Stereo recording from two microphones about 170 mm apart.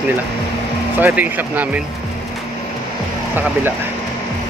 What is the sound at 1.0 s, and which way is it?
Speech, 10° right (ahead or behind).